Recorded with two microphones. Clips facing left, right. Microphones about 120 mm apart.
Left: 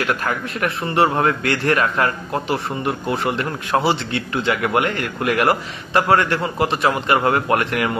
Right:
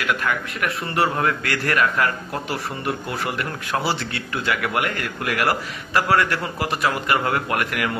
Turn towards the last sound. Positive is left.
turn(degrees=30)  # may be behind; listen again after turning